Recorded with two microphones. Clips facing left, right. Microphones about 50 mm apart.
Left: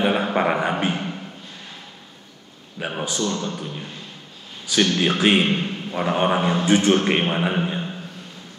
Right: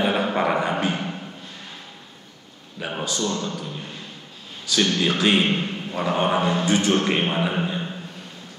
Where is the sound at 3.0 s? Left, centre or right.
Left.